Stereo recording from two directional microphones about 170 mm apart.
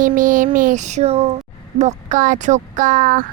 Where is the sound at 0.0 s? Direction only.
50° right (ahead or behind).